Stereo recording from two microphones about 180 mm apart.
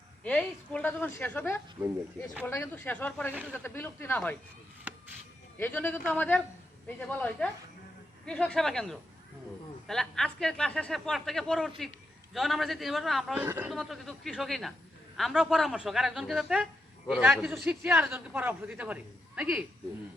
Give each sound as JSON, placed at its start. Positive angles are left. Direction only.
{"t": 0.3, "sound": "a woman's voice", "side_deg": 5}
{"t": 1.8, "sound": "speech", "side_deg": -20}
{"t": 2.4, "sound": "a woman's voice", "side_deg": 15}
{"t": 5.5, "sound": "a woman's voice", "side_deg": 10}
{"t": 13.4, "sound": "a man's voice", "side_deg": -10}
{"t": 13.7, "sound": "a man's voice", "side_deg": 0}